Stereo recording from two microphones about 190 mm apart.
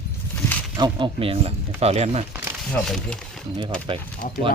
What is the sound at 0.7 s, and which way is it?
Speech, 25° right (ahead or behind).